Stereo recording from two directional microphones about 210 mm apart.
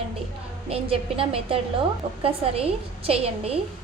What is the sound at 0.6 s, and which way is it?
A woman's voice, 25° right (ahead or behind).